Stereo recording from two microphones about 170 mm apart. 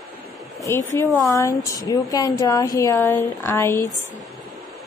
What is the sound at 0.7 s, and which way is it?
A woman's voice, 15° left (ahead or behind).